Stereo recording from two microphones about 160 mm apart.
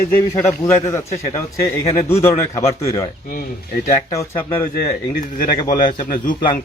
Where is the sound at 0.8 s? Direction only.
20° left (ahead or behind).